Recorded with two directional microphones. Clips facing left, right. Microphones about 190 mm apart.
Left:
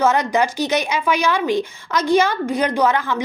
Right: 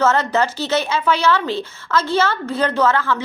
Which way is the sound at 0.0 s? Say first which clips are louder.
Even; 15° left (ahead or behind).